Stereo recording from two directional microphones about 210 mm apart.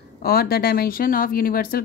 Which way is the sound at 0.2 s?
45° left (ahead or behind).